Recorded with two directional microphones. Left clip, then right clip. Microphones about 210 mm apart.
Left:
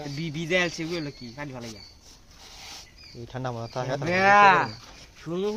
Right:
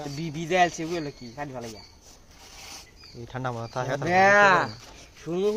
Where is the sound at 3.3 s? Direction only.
Centre (ahead or behind).